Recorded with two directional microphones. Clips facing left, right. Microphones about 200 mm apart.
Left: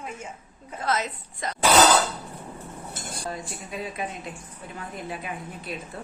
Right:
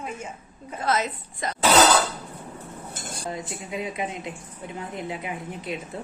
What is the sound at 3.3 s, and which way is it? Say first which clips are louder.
A woman's voice: right 4 dB; 20° right (ahead or behind).